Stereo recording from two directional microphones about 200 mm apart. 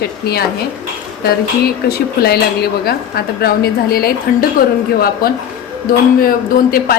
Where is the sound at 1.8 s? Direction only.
50° left (ahead or behind).